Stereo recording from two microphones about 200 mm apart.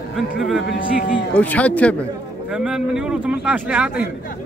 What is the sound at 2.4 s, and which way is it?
A man's voice, 5° right (ahead or behind).